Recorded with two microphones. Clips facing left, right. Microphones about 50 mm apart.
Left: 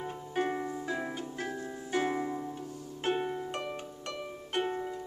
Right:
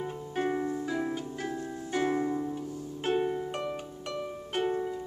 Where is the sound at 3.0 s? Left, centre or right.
Centre.